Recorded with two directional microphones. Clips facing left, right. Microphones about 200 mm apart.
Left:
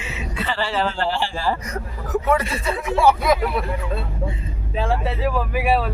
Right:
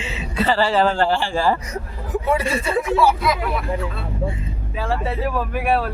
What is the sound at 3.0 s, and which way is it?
Speech, 55° left (ahead or behind).